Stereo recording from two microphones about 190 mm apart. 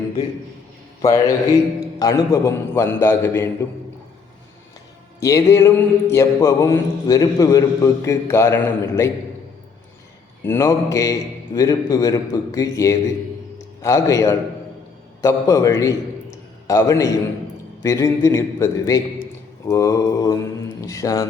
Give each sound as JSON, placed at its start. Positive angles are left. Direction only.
{"t": 1.0, "sound": "mantra", "side_deg": 15}
{"t": 5.2, "sound": "mantra", "side_deg": 15}
{"t": 10.4, "sound": "mantra", "side_deg": 15}
{"t": 19.6, "sound": "speech", "side_deg": 15}